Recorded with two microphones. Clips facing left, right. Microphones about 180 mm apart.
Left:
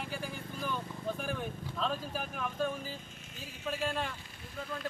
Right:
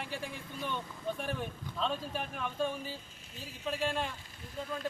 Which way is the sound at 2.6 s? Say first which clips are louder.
Even; 30° right (ahead or behind).